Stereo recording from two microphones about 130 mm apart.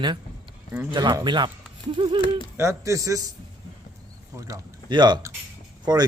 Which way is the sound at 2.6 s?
20° right (ahead or behind).